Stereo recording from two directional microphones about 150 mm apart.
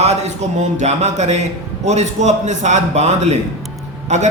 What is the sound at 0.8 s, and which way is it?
A man's voice, 50° right (ahead or behind).